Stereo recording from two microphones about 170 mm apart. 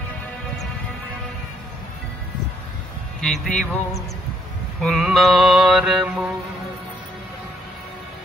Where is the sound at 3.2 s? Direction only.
Centre (ahead or behind).